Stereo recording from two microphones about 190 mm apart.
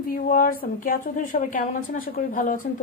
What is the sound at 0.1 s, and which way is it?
A woman's voice, 50° left (ahead or behind).